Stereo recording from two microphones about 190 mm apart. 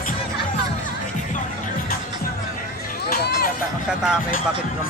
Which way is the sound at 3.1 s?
50° left (ahead or behind).